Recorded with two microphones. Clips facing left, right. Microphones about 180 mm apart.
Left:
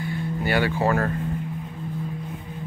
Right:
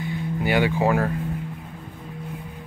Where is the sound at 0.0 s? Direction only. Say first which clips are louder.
Right 1 dB; 15° right (ahead or behind).